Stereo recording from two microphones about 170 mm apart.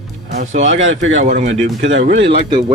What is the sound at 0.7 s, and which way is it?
Speech, 90° right.